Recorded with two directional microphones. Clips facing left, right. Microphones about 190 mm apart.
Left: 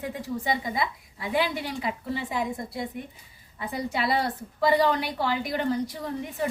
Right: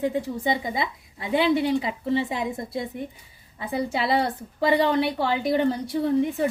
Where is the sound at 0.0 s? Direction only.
25° right (ahead or behind).